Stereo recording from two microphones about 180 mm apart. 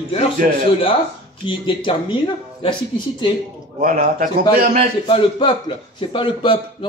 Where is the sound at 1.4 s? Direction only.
25° left (ahead or behind).